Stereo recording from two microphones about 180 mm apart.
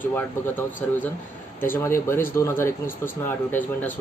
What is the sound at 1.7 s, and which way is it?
A man's voice, 15° left (ahead or behind).